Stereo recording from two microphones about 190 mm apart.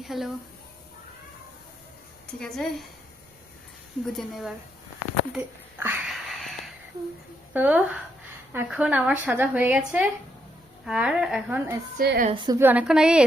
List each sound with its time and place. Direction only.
0.0 s speech: centre (ahead or behind)
2.4 s a woman's voice: centre (ahead or behind)
4.0 s a woman's voice: centre (ahead or behind)
5.3 s a sound: 10° right (ahead or behind)
7.5 s a woman's voice: 10° right (ahead or behind)
11.9 s a woman's voice: 50° right (ahead or behind)
12.3 s a woman's voice: 25° right (ahead or behind)
12.5 s a woman's voice: 10° right (ahead or behind)